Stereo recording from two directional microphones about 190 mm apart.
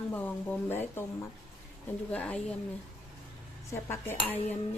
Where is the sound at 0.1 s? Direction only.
10° left (ahead or behind).